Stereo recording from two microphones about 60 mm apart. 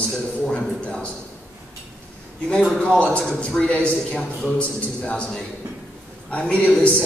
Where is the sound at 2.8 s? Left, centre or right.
Centre.